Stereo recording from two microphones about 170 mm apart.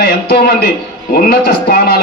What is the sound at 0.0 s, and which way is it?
Speech, 70° left (ahead or behind).